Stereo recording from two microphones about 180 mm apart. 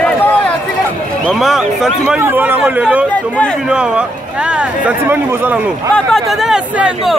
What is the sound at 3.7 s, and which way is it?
Speech, 5° right (ahead or behind).